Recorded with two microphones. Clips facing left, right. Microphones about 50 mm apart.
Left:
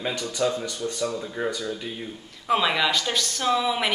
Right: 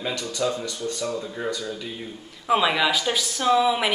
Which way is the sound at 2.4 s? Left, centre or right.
Centre.